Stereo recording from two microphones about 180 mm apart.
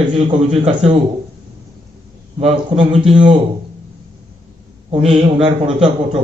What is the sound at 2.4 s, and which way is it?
A man's voice, 30° right (ahead or behind).